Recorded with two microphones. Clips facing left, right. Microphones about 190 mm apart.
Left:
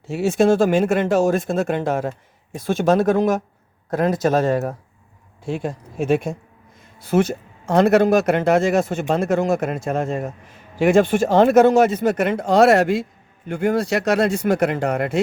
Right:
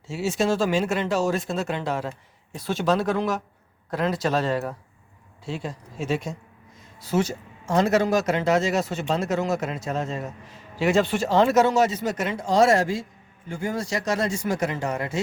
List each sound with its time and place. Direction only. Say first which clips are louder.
0.1 s speech: left 7 dB; 55° left (ahead or behind)